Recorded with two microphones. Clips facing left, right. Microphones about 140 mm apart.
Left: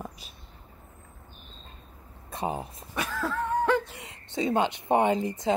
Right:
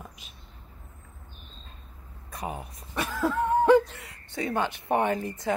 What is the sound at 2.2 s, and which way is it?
Speech, 30° left (ahead or behind).